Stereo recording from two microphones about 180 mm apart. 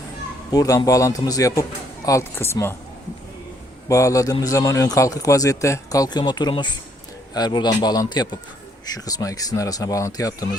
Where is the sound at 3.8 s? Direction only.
15° left (ahead or behind).